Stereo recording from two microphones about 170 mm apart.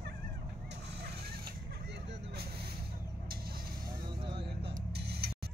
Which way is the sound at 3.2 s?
60° right (ahead or behind).